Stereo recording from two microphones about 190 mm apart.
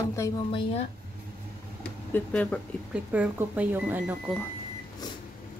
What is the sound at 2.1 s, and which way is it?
Speech, 10° left (ahead or behind).